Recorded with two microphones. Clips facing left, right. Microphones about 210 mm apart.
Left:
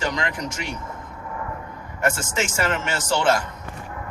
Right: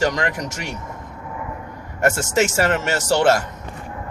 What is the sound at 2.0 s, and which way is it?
Speech, 45° right (ahead or behind).